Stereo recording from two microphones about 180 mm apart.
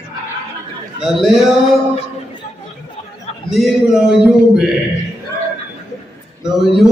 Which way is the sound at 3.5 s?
Centre (ahead or behind).